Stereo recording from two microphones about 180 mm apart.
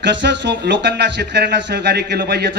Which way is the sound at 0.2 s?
70° right (ahead or behind).